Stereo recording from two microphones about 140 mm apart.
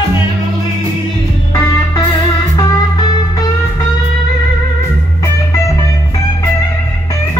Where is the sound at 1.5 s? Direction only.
30° left (ahead or behind).